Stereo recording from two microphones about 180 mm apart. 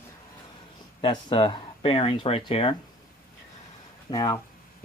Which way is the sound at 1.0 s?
25° left (ahead or behind).